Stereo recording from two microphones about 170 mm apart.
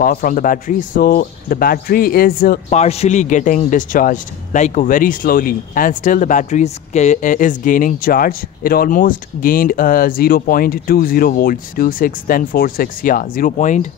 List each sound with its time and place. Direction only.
0.0 s a man's voice: 55° left (ahead or behind)
2.7 s a man's voice: 40° left (ahead or behind)